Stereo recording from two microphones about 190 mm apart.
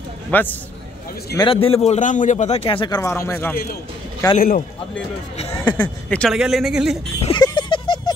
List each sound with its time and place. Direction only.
0.3 s speech: 10° left (ahead or behind)
1.5 s speech: 30° left (ahead or behind); by 3.5 s 10° left (ahead or behind)
4.4 s a man's voice: 45° left (ahead or behind)
5.6 s speech: 10° left (ahead or behind)
7.2 s a sound: 25° left (ahead or behind)